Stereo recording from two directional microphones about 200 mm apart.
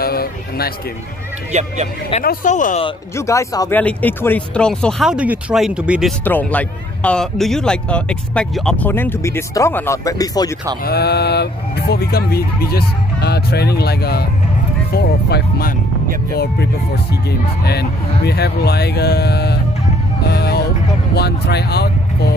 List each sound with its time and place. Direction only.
0.0 s speech: 50° left (ahead or behind)
1.5 s speech: 35° right (ahead or behind)
2.2 s speech: 40° left (ahead or behind)
3.2 s speech: 15° left (ahead or behind); by 6.1 s 5° right (ahead or behind)
6.2 s speech: 10° left (ahead or behind)
10.8 s speech: 50° left (ahead or behind)
20.2 s vehicle: 55° left (ahead or behind)
21.1 s speech: 55° left (ahead or behind)